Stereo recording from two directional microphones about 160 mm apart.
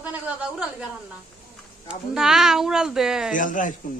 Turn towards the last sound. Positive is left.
turn(degrees=55)  # may be behind; listen again after turning